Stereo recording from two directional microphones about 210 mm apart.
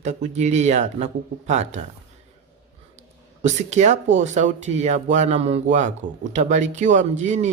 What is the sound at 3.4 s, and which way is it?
A man's voice, 35° right (ahead or behind).